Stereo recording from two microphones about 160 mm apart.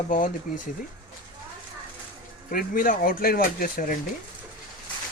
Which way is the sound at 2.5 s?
60° left (ahead or behind).